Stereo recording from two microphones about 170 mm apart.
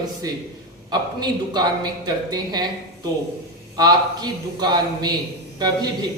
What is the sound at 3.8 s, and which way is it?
Speech, 25° right (ahead or behind).